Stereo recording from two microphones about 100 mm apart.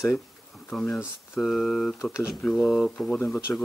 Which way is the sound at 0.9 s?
5° right (ahead or behind).